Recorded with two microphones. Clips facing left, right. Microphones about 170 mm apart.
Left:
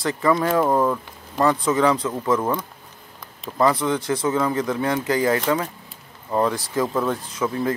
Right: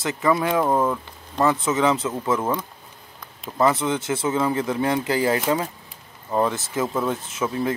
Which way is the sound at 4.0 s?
25° right (ahead or behind).